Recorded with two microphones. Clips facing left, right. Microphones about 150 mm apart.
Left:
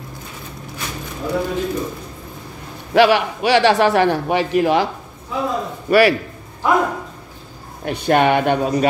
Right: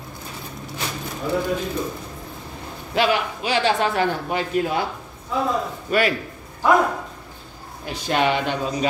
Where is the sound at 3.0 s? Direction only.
75° left (ahead or behind).